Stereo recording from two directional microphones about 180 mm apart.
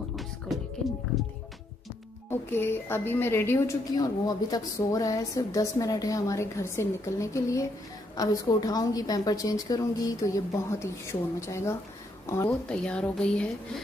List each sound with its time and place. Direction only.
0.1 s music: centre (ahead or behind)
2.5 s a woman's voice: 10° left (ahead or behind)